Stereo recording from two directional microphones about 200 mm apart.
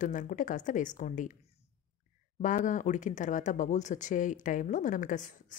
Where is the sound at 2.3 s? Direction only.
40° left (ahead or behind).